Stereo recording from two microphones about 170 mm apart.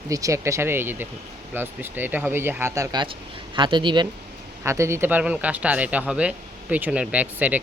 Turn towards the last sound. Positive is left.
turn(degrees=-10)  # may be behind; listen again after turning